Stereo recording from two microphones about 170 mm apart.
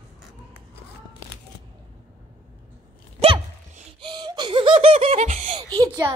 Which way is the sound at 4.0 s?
25° right (ahead or behind).